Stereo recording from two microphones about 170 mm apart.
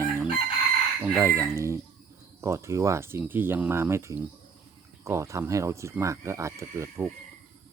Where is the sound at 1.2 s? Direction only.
15° right (ahead or behind).